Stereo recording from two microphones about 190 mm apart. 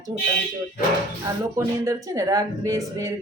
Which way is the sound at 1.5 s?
15° right (ahead or behind).